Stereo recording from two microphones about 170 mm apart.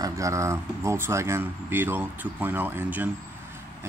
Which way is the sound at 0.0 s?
20° right (ahead or behind).